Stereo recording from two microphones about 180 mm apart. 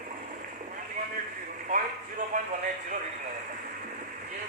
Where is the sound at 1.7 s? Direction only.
45° right (ahead or behind).